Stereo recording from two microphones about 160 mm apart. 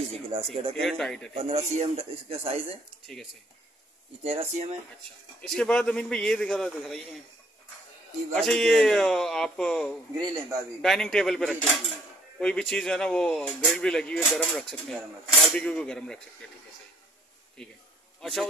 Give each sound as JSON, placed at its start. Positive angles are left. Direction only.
{"t": 0.1, "sound": "a man's voice", "side_deg": -40}
{"t": 0.7, "sound": "speech", "side_deg": 5}
{"t": 1.3, "sound": "a man's voice", "side_deg": -40}
{"t": 4.2, "sound": "a man's voice", "side_deg": -35}
{"t": 5.4, "sound": "speech", "side_deg": 5}
{"t": 8.4, "sound": "speech", "side_deg": 5}
{"t": 10.1, "sound": "a man's voice", "side_deg": -25}
{"t": 10.8, "sound": "speech", "side_deg": 5}
{"t": 17.6, "sound": "a man's voice", "side_deg": 5}